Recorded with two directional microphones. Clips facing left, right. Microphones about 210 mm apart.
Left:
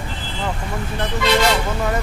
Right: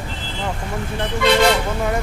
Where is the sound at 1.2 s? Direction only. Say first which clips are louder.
Right 2 dB; 55° right (ahead or behind).